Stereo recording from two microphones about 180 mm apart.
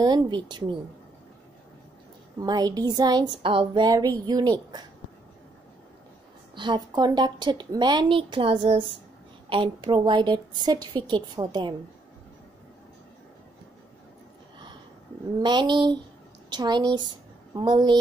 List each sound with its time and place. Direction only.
0.0 s speech: 25° right (ahead or behind)
2.4 s speech: 20° right (ahead or behind)
6.5 s speech: 25° right (ahead or behind)
15.4 s a woman's voice: 25° right (ahead or behind)